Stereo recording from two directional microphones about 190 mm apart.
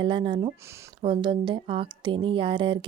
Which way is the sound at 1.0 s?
25° right (ahead or behind).